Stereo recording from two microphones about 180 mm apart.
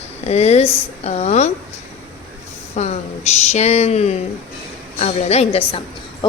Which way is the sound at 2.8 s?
35° left (ahead or behind).